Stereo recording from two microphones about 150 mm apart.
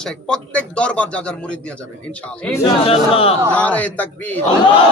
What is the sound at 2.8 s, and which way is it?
Speech, 40° left (ahead or behind).